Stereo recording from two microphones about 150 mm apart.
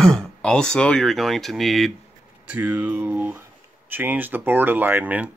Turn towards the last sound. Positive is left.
turn(degrees=-10)  # may be behind; listen again after turning